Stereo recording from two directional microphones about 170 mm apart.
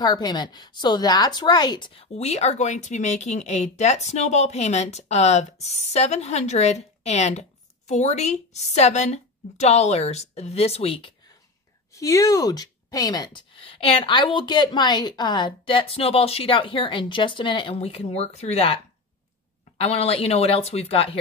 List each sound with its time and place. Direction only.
0.0 s a woman's voice: 25° left (ahead or behind)
11.9 s speech: 20° left (ahead or behind); by 18.8 s 40° left (ahead or behind)
19.8 s a woman's voice: 35° left (ahead or behind)